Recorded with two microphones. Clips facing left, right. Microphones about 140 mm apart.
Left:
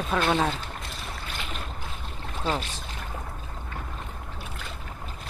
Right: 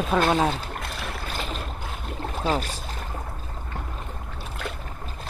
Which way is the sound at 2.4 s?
35° right (ahead or behind).